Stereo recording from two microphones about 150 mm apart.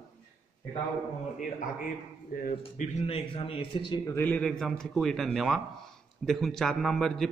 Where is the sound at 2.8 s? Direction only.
45° left (ahead or behind).